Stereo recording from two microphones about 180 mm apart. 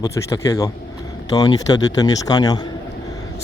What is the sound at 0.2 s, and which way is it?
Speech, 20° left (ahead or behind).